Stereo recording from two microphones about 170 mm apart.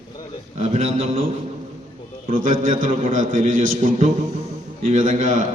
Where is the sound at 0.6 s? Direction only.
40° right (ahead or behind).